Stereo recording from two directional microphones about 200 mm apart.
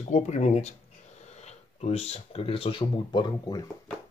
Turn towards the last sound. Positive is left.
turn(degrees=20)  # may be behind; listen again after turning